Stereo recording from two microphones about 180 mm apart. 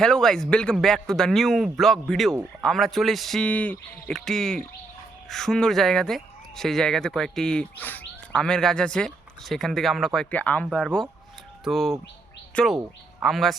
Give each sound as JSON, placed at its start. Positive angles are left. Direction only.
{"t": 0.0, "sound": "speech", "side_deg": 5}